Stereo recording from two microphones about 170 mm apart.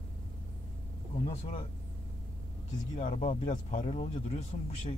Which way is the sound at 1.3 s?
35° left (ahead or behind).